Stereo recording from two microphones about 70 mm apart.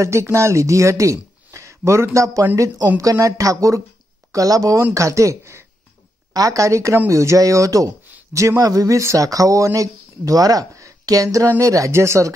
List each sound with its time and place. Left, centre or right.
0.0 s speech: right
2.1 s speech: right
6.3 s speech: right
11.2 s speech: right
11.6 s speech: right